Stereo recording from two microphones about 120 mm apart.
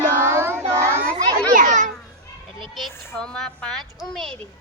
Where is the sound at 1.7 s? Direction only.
90° right.